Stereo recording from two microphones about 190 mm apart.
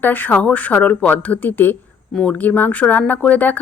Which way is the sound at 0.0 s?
10° left (ahead or behind).